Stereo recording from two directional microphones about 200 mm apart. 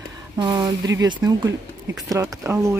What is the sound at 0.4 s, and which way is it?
Speech, 20° right (ahead or behind).